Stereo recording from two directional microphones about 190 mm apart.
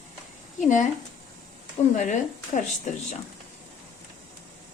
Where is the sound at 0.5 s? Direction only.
40° left (ahead or behind).